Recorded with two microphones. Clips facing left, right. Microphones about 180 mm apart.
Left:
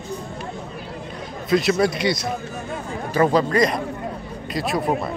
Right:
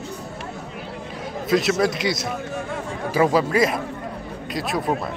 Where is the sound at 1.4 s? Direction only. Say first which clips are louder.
Left 1 dB; centre (ahead or behind).